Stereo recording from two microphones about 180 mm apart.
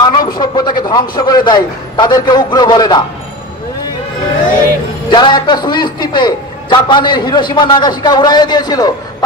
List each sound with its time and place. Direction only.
0.0 s a sound: 25° left (ahead or behind)
0.8 s a man's voice: 25° left (ahead or behind)
5.1 s a man's voice: 25° left (ahead or behind)